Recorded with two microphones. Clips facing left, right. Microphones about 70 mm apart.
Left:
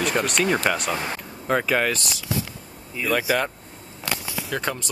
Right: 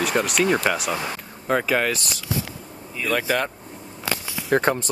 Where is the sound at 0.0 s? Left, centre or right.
Centre.